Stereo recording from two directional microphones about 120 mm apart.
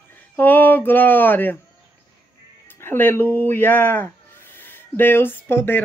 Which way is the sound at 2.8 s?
15° left (ahead or behind).